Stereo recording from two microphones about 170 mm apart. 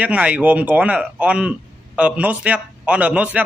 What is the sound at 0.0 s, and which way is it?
A man's voice, 10° right (ahead or behind).